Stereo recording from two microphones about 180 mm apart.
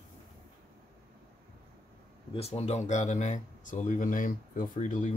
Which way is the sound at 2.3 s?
35° left (ahead or behind).